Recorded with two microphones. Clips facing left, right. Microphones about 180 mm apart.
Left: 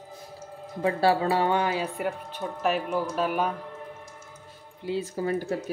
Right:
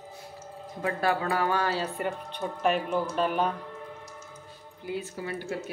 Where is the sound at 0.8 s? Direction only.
30° left (ahead or behind).